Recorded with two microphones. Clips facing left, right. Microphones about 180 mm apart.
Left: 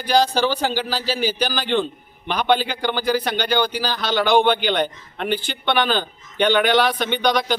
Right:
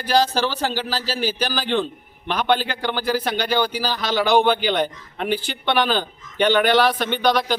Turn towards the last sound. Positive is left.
turn(degrees=-5)  # may be behind; listen again after turning